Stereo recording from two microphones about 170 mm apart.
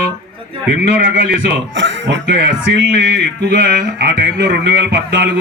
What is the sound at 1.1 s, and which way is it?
Speech, 90° right.